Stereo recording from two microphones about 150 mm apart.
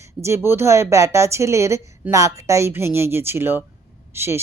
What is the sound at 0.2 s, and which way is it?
A woman's voice, 20° right (ahead or behind).